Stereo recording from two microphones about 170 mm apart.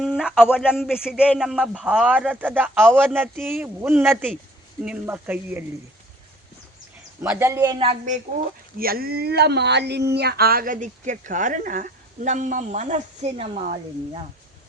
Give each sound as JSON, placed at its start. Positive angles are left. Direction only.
{"t": 0.0, "sound": "a sound", "side_deg": -5}
{"t": 0.5, "sound": "speech", "side_deg": -5}
{"t": 7.2, "sound": "speech", "side_deg": -15}
{"t": 7.9, "sound": "speech", "side_deg": -45}
{"t": 8.8, "sound": "speech", "side_deg": -60}